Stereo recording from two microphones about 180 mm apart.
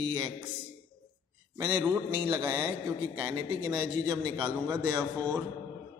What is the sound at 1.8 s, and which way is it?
Speech, 10° right (ahead or behind).